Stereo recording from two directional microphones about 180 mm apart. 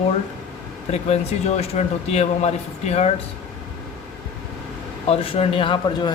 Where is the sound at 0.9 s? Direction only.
35° left (ahead or behind).